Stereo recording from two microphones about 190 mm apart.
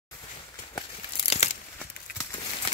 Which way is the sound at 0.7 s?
30° left (ahead or behind).